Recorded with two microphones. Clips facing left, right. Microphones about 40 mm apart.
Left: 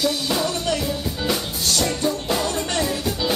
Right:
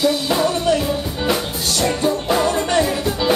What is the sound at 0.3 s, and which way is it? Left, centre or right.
Music, centre.